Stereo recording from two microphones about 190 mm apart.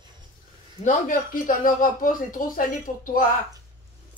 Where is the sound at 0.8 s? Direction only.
40° left (ahead or behind).